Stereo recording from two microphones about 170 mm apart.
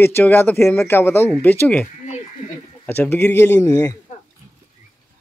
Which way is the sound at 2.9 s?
10° left (ahead or behind).